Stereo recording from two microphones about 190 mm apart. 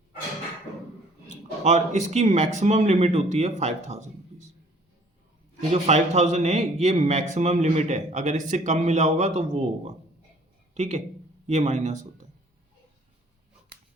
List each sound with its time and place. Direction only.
1.6 s a man's voice: 40° right (ahead or behind)
5.5 s a man's voice: 35° right (ahead or behind)